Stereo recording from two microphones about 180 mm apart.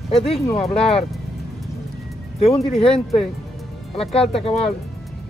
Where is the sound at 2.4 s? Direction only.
35° left (ahead or behind).